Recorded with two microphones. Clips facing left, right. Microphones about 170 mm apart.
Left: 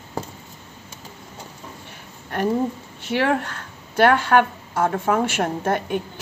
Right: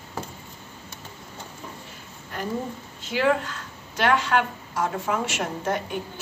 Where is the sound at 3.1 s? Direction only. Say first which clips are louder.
Left 2 dB; 60° left (ahead or behind).